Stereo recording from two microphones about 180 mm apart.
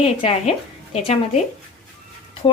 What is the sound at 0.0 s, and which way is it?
Speech, 35° left (ahead or behind).